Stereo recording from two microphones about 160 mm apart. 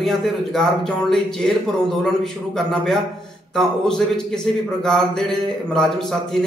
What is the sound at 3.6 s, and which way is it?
Speech, 5° left (ahead or behind).